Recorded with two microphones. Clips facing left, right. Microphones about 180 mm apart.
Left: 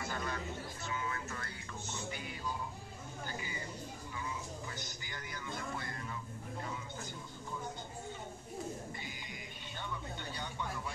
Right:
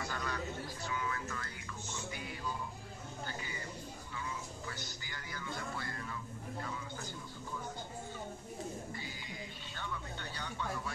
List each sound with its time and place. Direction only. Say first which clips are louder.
0.0 s a sound: even; 25° left (ahead or behind)
0.8 s vehicle: right 1 dB; 25° left (ahead or behind)
4.7 s music: left 1 dB; 20° left (ahead or behind)